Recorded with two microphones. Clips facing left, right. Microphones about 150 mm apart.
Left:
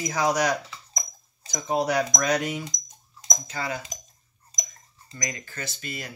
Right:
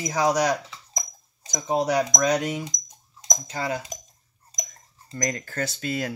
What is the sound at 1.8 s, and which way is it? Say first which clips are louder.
Speech: right 4 dB; 15° right (ahead or behind).